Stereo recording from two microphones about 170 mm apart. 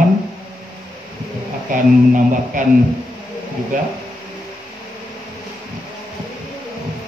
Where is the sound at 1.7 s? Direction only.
50° right (ahead or behind).